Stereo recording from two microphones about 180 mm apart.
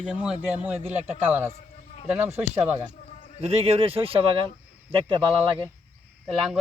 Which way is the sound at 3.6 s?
35° right (ahead or behind).